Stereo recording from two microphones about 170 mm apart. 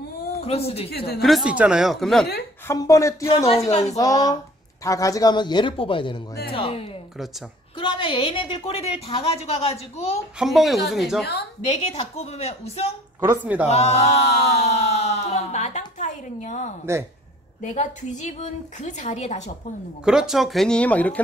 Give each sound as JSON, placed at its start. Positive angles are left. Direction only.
{"t": 0.4, "sound": "a woman's voice", "side_deg": 35}
{"t": 0.8, "sound": "a woman's voice", "side_deg": 70}
{"t": 1.2, "sound": "speech", "side_deg": -5}
{"t": 2.7, "sound": "a woman's voice", "side_deg": 20}
{"t": 10.4, "sound": "speech", "side_deg": 0}
{"t": 11.6, "sound": "a woman's voice", "side_deg": 40}
{"t": 13.2, "sound": "speech", "side_deg": -15}
{"t": 13.7, "sound": "a sound", "side_deg": 40}
{"t": 17.6, "sound": "a woman's voice", "side_deg": 45}
{"t": 20.1, "sound": "speech", "side_deg": -5}